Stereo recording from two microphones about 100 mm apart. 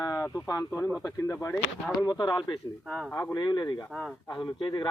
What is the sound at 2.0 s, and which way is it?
Speech, 45° left (ahead or behind).